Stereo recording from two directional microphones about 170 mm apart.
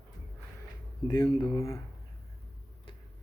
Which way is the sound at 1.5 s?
15° left (ahead or behind).